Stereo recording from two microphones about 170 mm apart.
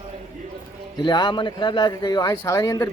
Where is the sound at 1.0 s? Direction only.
25° left (ahead or behind).